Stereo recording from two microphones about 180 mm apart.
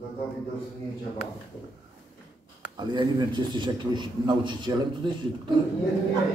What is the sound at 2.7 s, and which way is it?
A man's voice, 25° right (ahead or behind).